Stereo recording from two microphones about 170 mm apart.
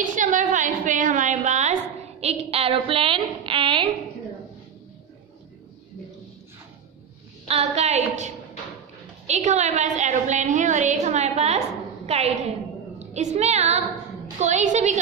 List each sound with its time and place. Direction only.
0.1 s a sound: 50° right (ahead or behind); by 3.9 s 30° right (ahead or behind)
7.4 s a woman's voice: 40° right (ahead or behind)
9.3 s a woman's voice: 45° right (ahead or behind)